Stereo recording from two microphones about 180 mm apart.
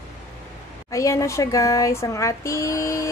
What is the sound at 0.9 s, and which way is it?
A woman's voice, 15° left (ahead or behind).